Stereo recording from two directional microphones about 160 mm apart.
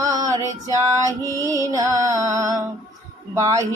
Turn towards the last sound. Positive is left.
turn(degrees=-20)  # may be behind; listen again after turning